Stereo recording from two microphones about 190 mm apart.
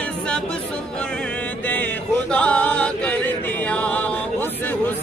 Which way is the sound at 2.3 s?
5° left (ahead or behind).